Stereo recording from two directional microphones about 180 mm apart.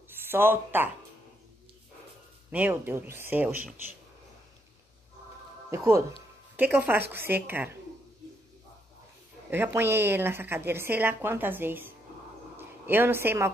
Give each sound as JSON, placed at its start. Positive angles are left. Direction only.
{"t": 0.1, "sound": "speech", "side_deg": -10}
{"t": 2.5, "sound": "a woman's voice", "side_deg": -10}
{"t": 5.7, "sound": "a woman's voice", "side_deg": -15}
{"t": 9.5, "sound": "a woman's voice", "side_deg": -15}